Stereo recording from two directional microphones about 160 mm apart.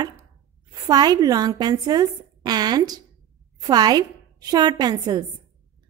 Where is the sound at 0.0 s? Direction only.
20° right (ahead or behind).